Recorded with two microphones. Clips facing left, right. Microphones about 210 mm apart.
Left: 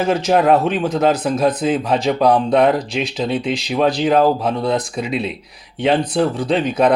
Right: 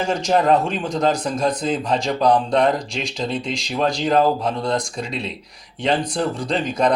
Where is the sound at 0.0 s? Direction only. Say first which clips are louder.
Left 4 dB; 5° left (ahead or behind).